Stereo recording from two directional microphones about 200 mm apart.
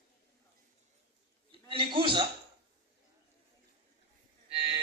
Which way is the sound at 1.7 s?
25° right (ahead or behind).